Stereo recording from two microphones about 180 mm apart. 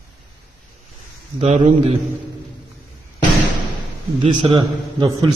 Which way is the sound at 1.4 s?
40° right (ahead or behind).